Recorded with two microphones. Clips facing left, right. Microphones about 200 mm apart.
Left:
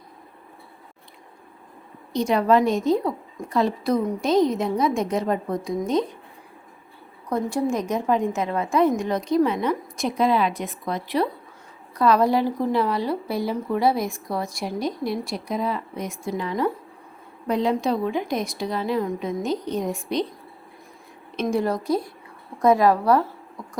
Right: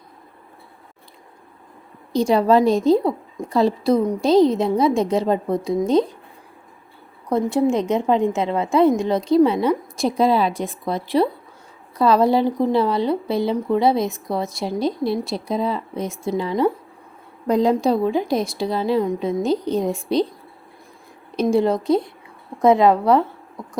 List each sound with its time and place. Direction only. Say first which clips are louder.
2.1 s a woman's voice: right 3 dB; 30° right (ahead or behind)
7.3 s a woman's voice: right 5 dB; 25° right (ahead or behind)
17.5 s a woman's voice: right 5 dB; 40° right (ahead or behind)
21.3 s a woman's voice: right 5 dB; 25° right (ahead or behind)